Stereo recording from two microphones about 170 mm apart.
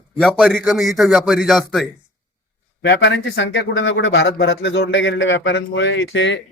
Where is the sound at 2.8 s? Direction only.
90° left.